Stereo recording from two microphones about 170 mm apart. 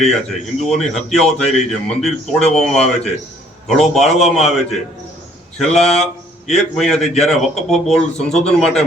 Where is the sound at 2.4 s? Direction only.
40° left (ahead or behind).